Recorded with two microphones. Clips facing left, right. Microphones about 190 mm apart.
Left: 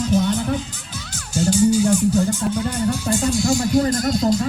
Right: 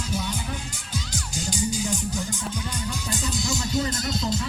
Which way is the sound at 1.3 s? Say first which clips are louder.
Left 13 dB; 15° right (ahead or behind).